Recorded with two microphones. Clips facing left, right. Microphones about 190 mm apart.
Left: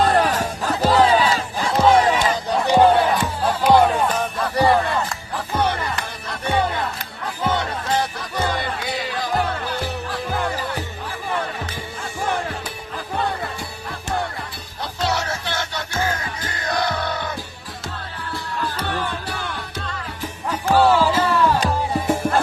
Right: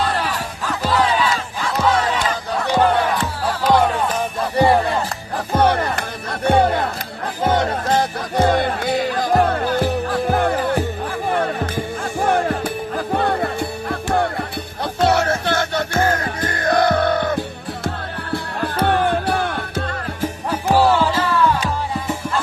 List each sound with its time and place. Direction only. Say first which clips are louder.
0.0 s music: left 4 dB; 45° left (ahead or behind); by 2.0 s 25° left (ahead or behind)
2.6 s music: left 2 dB; 15° left (ahead or behind)
4.5 s music: right 2 dB; 25° right (ahead or behind)
5.5 s music: right 6 dB; 50° right (ahead or behind)